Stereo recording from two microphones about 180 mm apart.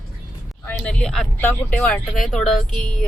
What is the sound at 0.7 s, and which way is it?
Speech, 5° left (ahead or behind).